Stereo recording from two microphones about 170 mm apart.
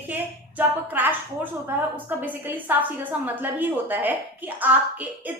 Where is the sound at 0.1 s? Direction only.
10° right (ahead or behind).